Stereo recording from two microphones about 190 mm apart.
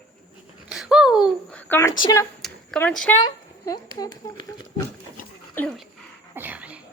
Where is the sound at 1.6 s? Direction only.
10° left (ahead or behind).